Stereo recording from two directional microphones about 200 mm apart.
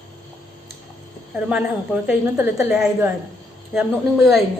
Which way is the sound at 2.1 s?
10° right (ahead or behind).